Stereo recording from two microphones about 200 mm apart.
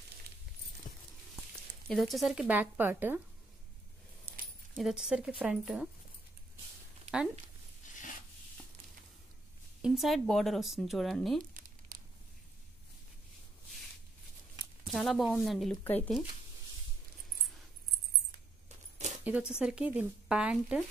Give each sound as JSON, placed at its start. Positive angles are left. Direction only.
{"t": 0.9, "sound": "horse", "side_deg": 40}
{"t": 1.9, "sound": "speech", "side_deg": 0}
{"t": 4.3, "sound": "keys jangling", "side_deg": -50}
{"t": 4.7, "sound": "speech", "side_deg": 0}
{"t": 7.9, "sound": "a sound", "side_deg": 40}
{"t": 9.8, "sound": "speech", "side_deg": -5}
{"t": 11.5, "sound": "crumpling", "side_deg": -40}
{"t": 14.9, "sound": "speech", "side_deg": 0}
{"t": 19.5, "sound": "speech", "side_deg": -5}